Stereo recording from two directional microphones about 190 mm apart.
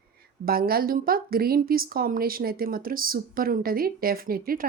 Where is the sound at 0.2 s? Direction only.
50° right (ahead or behind).